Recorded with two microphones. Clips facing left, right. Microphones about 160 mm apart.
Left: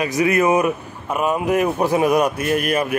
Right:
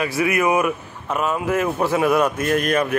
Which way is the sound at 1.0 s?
15° left (ahead or behind).